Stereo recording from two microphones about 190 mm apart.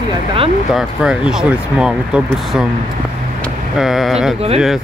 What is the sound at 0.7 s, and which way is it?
Speech, 5° right (ahead or behind).